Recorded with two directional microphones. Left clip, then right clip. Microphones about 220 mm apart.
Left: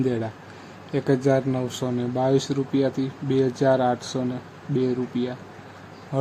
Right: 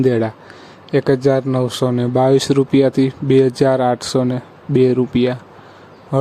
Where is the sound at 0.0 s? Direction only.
20° right (ahead or behind).